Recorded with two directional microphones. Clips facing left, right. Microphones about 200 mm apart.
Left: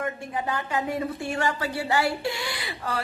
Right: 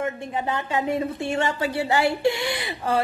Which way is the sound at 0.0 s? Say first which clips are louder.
Right 3 dB; 25° right (ahead or behind).